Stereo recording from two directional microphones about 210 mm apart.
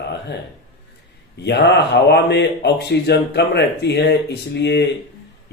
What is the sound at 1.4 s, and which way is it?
Speech, 55° left (ahead or behind).